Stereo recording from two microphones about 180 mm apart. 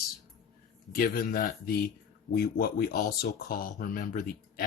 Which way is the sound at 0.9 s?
55° left (ahead or behind).